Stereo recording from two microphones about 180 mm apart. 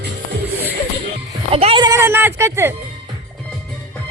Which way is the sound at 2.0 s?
10° right (ahead or behind).